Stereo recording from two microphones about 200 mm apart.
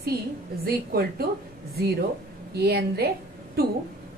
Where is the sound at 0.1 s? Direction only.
50° right (ahead or behind).